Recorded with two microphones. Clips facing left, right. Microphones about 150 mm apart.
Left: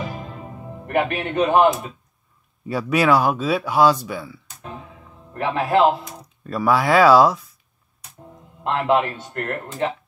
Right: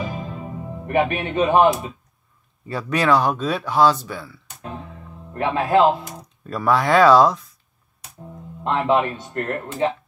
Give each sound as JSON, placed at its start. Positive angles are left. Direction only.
{"t": 0.0, "sound": "music", "side_deg": 0}
{"t": 2.6, "sound": "speech", "side_deg": 5}
{"t": 4.6, "sound": "music", "side_deg": 5}
{"t": 5.3, "sound": "speech", "side_deg": 0}
{"t": 8.6, "sound": "speech", "side_deg": 0}
{"t": 9.3, "sound": "speech", "side_deg": -25}